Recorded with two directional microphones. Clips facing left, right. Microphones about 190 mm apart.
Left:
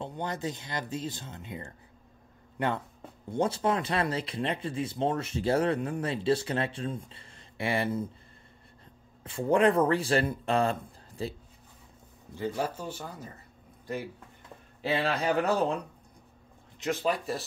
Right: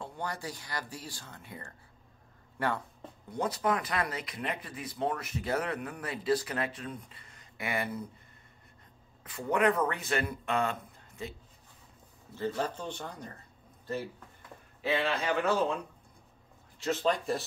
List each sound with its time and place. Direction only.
0.0 s speech: 20° left (ahead or behind)
9.2 s speech: 30° left (ahead or behind)
12.4 s speech: 10° left (ahead or behind)
14.8 s speech: 30° left (ahead or behind)
16.7 s speech: 15° left (ahead or behind)